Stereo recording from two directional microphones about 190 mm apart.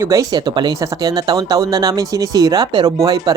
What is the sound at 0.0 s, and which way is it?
Speech, 15° right (ahead or behind).